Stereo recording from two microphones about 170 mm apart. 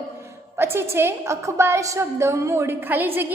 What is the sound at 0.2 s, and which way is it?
A woman's voice, 15° right (ahead or behind).